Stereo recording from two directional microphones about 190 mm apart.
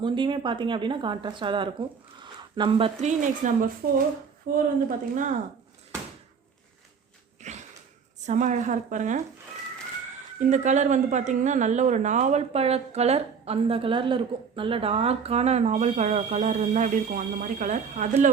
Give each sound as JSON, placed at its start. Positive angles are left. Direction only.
{"t": 0.0, "sound": "speech", "side_deg": -25}
{"t": 7.4, "sound": "wheeze", "side_deg": -40}
{"t": 8.3, "sound": "speech", "side_deg": -40}
{"t": 10.4, "sound": "speech", "side_deg": -40}